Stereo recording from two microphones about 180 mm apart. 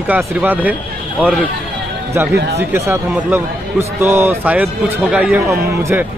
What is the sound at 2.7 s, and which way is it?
A man's voice, 10° right (ahead or behind).